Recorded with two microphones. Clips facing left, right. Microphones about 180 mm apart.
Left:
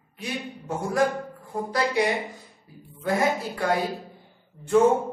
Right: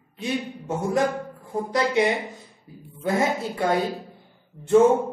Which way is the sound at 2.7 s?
25° right (ahead or behind).